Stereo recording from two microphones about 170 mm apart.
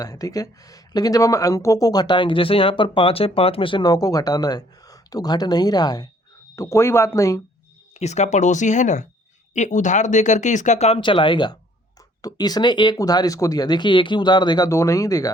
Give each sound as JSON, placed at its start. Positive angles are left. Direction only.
{"t": 0.0, "sound": "speech", "side_deg": 20}
{"t": 7.9, "sound": "speech", "side_deg": 40}